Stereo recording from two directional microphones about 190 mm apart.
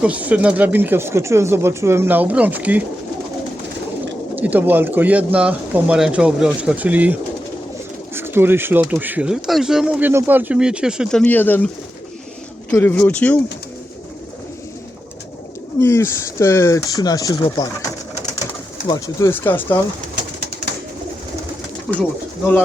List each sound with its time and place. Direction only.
0.0 s speech: 5° right (ahead or behind)
4.4 s speech: 10° right (ahead or behind); by 11.7 s 10° left (ahead or behind)
12.7 s speech: 10° left (ahead or behind)
15.8 s speech: 15° left (ahead or behind)
18.9 s speech: 20° left (ahead or behind)